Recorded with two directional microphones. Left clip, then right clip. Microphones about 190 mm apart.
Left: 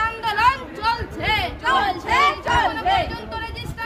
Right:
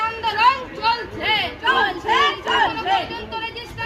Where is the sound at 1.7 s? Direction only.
20° left (ahead or behind).